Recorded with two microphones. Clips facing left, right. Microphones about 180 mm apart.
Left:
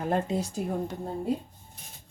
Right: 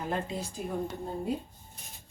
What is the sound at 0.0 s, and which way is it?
Speech, 50° left (ahead or behind).